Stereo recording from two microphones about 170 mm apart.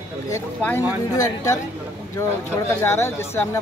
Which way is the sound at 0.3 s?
15° left (ahead or behind).